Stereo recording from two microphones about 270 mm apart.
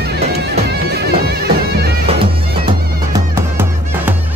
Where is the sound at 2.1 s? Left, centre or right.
Centre.